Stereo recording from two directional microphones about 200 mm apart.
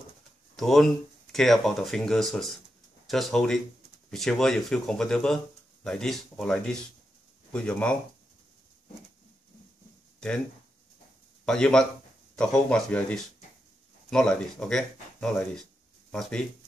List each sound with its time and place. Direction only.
0.6 s speech: centre (ahead or behind)
11.4 s speech: 5° left (ahead or behind)